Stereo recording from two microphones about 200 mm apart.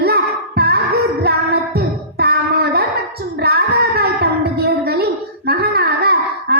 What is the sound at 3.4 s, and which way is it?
Child singing, 50° right (ahead or behind).